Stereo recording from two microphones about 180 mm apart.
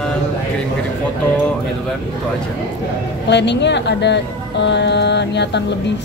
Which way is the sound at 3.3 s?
75° left (ahead or behind).